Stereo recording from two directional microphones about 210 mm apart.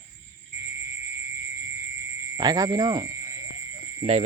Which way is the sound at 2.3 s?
20° right (ahead or behind).